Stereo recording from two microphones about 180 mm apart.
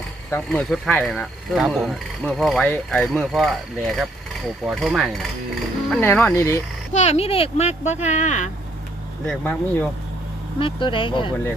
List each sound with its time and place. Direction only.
0.3 s speech: 10° left (ahead or behind)
5.9 s speech: 10° left (ahead or behind)
6.9 s speech: 35° left (ahead or behind)
9.2 s speech: 10° left (ahead or behind)
10.6 s speech: 30° left (ahead or behind)